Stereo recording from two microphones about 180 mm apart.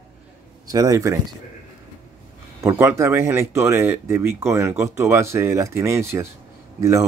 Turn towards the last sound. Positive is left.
turn(degrees=-15)  # may be behind; listen again after turning